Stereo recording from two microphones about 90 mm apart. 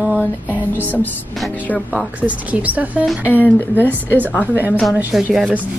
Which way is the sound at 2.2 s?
15° right (ahead or behind).